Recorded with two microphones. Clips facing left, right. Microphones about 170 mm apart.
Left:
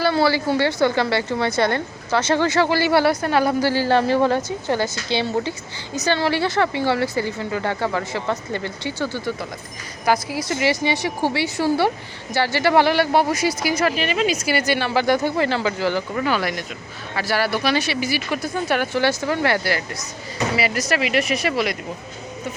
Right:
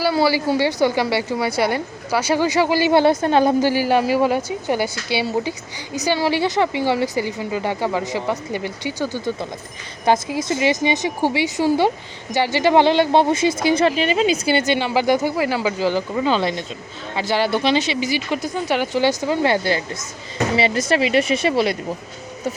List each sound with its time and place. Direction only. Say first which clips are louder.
0.0 s a woman's voice: right 1 dB; 10° right (ahead or behind); by 21.8 s 30° right (ahead or behind)